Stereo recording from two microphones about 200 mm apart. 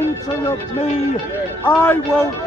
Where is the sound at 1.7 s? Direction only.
15° left (ahead or behind).